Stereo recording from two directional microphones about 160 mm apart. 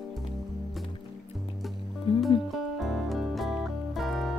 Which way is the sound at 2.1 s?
30° left (ahead or behind).